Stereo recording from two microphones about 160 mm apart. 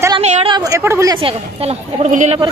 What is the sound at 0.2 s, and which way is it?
Speech, 45° right (ahead or behind).